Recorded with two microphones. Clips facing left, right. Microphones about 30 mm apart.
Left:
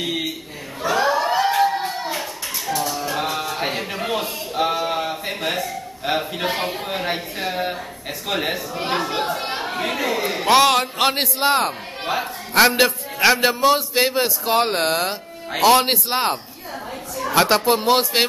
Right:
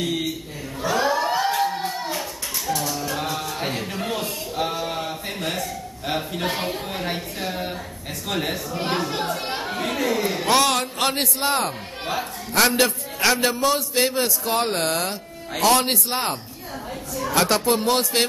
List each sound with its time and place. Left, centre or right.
0.0 s a man's voice: centre
0.8 s a sound: centre
8.3 s a man's voice: centre
17.1 s speech: centre